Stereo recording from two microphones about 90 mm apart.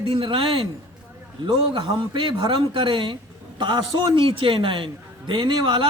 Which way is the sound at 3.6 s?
60° right (ahead or behind).